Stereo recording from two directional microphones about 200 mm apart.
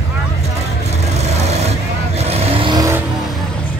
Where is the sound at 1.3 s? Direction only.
35° right (ahead or behind); by 3.0 s 15° right (ahead or behind).